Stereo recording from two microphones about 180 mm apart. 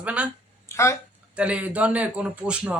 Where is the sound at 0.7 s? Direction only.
15° left (ahead or behind).